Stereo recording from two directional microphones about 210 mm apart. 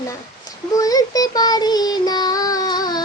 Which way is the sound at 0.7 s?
15° left (ahead or behind).